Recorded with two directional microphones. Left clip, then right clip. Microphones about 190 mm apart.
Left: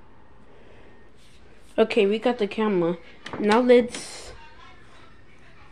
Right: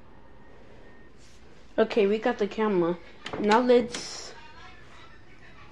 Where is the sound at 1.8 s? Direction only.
20° left (ahead or behind).